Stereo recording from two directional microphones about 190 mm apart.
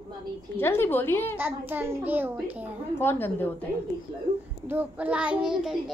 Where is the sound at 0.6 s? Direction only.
10° left (ahead or behind).